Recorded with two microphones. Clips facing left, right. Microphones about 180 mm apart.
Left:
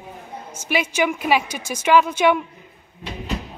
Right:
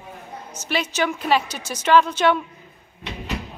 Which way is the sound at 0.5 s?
10° left (ahead or behind).